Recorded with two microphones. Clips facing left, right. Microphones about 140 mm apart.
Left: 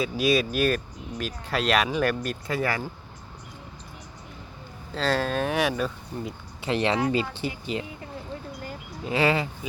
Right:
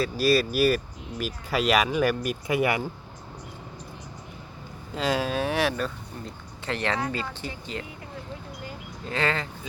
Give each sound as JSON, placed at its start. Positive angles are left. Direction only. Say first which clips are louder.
{"t": 0.0, "sound": "speech", "louder": "right 1 dB", "side_deg": 0}
{"t": 4.9, "sound": "speech", "louder": "left 1 dB", "side_deg": -10}
{"t": 6.7, "sound": "speech", "louder": "left 4 dB", "side_deg": 20}
{"t": 9.0, "sound": "speech", "louder": "left 4 dB", "side_deg": 10}